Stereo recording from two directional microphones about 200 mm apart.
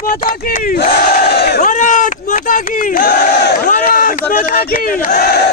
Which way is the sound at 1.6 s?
40° left (ahead or behind).